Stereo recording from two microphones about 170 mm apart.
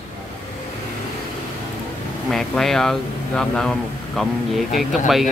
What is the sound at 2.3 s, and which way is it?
Speech, centre (ahead or behind).